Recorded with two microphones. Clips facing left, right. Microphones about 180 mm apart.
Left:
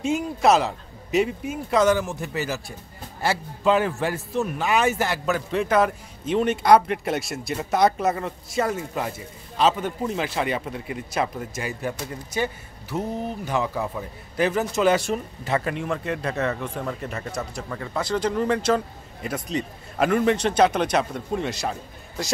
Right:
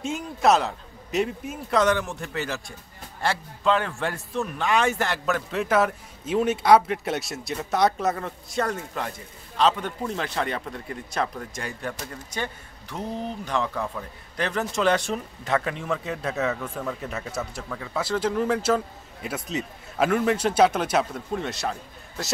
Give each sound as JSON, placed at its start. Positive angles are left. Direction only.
{"t": 0.0, "sound": "speech", "side_deg": 0}